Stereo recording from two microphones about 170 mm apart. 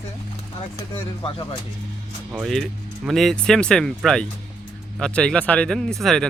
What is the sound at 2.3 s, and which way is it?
Speech, centre (ahead or behind).